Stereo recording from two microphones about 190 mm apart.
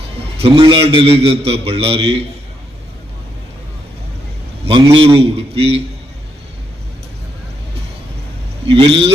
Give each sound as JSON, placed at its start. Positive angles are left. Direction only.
{"t": 0.4, "sound": "a man's voice", "side_deg": -30}
{"t": 4.6, "sound": "a man's voice", "side_deg": -25}
{"t": 8.6, "sound": "speech", "side_deg": -30}